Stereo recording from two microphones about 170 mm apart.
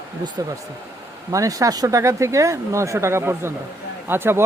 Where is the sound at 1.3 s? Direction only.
20° right (ahead or behind).